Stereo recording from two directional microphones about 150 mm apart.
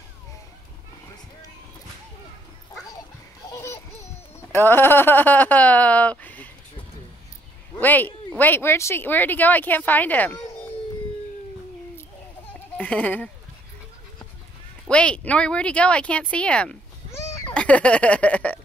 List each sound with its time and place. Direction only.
3.5 s a sound: 20° left (ahead or behind)
4.6 s speech: 15° left (ahead or behind)
7.8 s speech: 10° left (ahead or behind)
12.7 s speech: 10° left (ahead or behind)
14.9 s speech: 5° left (ahead or behind)